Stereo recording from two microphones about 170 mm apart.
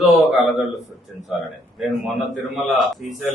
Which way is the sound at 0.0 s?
Centre (ahead or behind).